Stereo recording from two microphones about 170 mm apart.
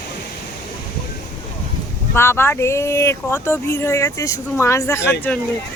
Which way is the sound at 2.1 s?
15° left (ahead or behind).